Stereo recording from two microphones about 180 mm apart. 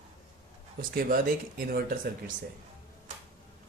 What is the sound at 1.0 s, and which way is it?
Speech, 55° right (ahead or behind).